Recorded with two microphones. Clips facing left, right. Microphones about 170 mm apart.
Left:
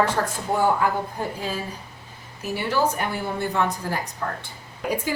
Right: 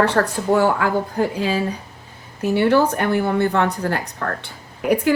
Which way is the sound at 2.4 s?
60° right (ahead or behind).